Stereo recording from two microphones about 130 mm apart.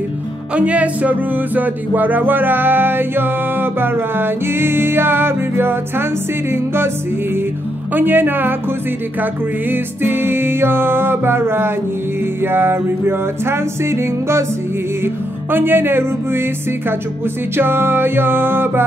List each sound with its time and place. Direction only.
0.6 s music: 10° right (ahead or behind)
7.9 s music: 15° right (ahead or behind)
15.5 s music: 15° right (ahead or behind)
17.6 s music: 15° right (ahead or behind)